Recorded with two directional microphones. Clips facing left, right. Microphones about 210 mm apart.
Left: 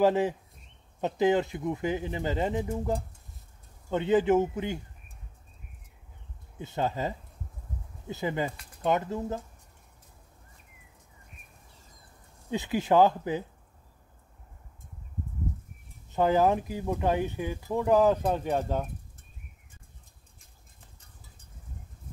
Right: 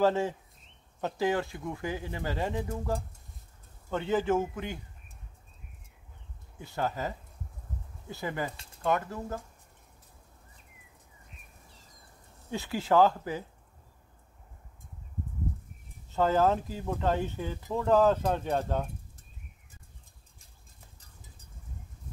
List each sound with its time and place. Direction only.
0.0 s speech: 15° left (ahead or behind)
6.6 s speech: 20° left (ahead or behind)
12.4 s speech: 20° left (ahead or behind)
16.1 s speech: 15° left (ahead or behind)